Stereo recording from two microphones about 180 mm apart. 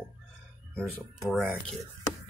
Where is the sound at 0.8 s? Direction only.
5° left (ahead or behind).